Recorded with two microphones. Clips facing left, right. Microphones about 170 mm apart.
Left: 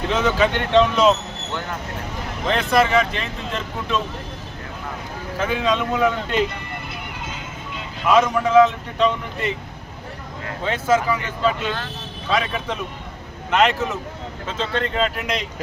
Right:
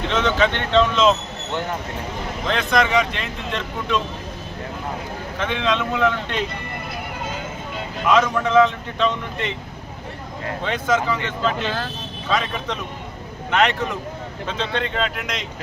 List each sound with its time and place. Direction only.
0.1 s a man's voice: 10° left (ahead or behind)
2.5 s speech: 5° left (ahead or behind)
5.4 s a man's voice: 5° left (ahead or behind)
8.1 s a man's voice: 10° left (ahead or behind)
10.6 s a man's voice: 5° left (ahead or behind)